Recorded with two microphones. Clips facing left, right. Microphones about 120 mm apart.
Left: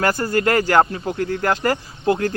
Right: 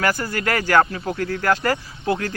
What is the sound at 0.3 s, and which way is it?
Speech, 25° left (ahead or behind).